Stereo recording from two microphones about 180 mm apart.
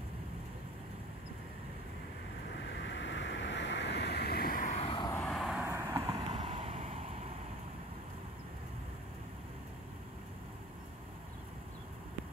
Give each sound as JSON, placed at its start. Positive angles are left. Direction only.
{"t": 2.7, "sound": "waves", "side_deg": 80}
{"t": 4.7, "sound": "vehicle", "side_deg": 30}
{"t": 5.1, "sound": "vehicle", "side_deg": 5}
{"t": 5.7, "sound": "vehicle", "side_deg": -15}
{"t": 6.3, "sound": "vehicle", "side_deg": -35}